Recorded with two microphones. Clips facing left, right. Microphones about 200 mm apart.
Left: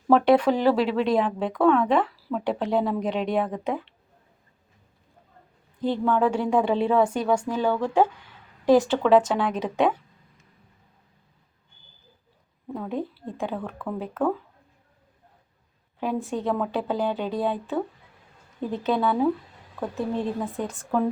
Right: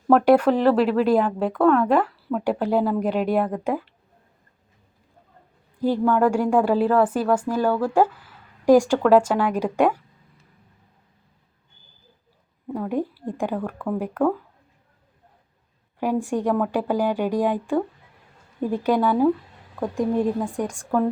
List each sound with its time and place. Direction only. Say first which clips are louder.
0.1 s a woman's voice: right 2 dB; 5° right (ahead or behind)
5.8 s speech: right 3 dB; 10° right (ahead or behind)
12.7 s speech: right 4 dB; 10° right (ahead or behind)
16.0 s speech: right 4 dB; 15° right (ahead or behind)